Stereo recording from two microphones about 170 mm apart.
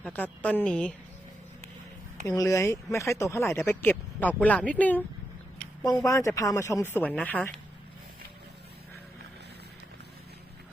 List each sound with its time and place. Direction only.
0.0 s speech: 10° left (ahead or behind)
2.2 s speech: 20° left (ahead or behind)
5.8 s speech: 20° left (ahead or behind)